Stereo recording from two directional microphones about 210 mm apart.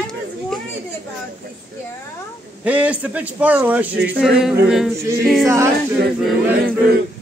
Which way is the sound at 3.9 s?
55° right (ahead or behind).